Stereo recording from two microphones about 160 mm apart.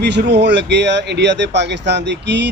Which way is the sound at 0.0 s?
90° right.